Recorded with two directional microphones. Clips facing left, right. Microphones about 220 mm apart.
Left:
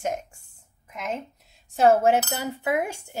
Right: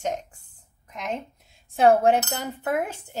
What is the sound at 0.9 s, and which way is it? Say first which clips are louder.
Speech: even; 5° left (ahead or behind).